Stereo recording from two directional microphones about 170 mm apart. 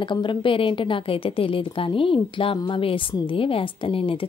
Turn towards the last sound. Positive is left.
turn(degrees=30)  # may be behind; listen again after turning